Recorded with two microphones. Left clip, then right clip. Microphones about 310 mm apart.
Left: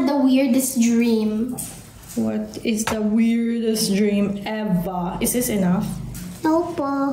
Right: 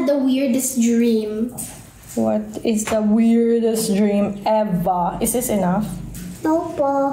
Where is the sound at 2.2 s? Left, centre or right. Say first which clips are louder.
Right 5 dB; centre.